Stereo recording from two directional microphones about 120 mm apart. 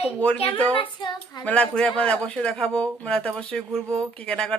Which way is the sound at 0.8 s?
40° left (ahead or behind).